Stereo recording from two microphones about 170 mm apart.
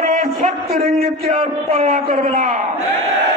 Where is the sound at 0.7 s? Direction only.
65° right (ahead or behind).